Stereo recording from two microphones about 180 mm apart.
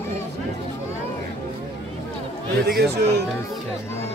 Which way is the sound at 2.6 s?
60° right (ahead or behind).